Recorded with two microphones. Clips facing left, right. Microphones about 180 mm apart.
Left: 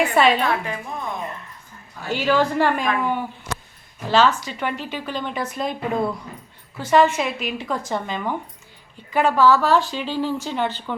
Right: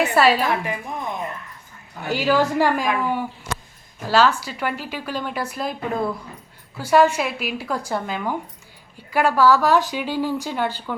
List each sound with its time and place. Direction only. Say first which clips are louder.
0.0 s a woman's voice: even; 5° right (ahead or behind)
0.6 s a woman's voice: right 1 dB; 15° right (ahead or behind)